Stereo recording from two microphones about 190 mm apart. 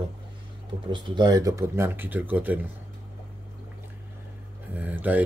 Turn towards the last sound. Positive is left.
turn(degrees=-10)  # may be behind; listen again after turning